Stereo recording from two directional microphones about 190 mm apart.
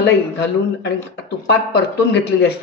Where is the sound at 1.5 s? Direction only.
65° left (ahead or behind).